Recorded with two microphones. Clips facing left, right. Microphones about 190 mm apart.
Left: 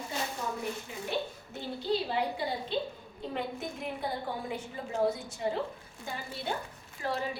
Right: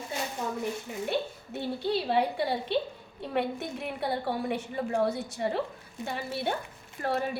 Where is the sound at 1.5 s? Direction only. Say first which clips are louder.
Right 2 dB; 65° right (ahead or behind).